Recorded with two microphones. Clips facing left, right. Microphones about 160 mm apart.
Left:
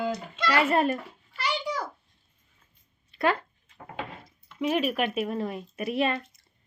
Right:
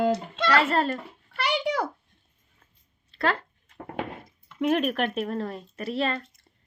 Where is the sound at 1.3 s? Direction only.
70° right (ahead or behind).